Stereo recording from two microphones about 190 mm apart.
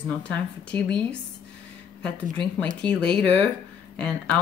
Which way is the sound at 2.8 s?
25° right (ahead or behind).